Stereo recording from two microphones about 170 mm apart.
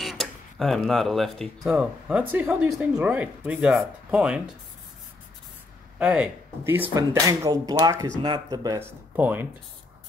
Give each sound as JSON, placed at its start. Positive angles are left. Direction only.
{"t": 0.0, "sound": "speech", "side_deg": 0}
{"t": 5.9, "sound": "speech", "side_deg": -10}